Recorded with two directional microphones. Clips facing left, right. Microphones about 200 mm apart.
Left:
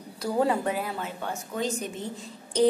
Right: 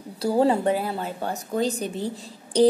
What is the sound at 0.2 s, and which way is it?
A woman's voice, 30° right (ahead or behind).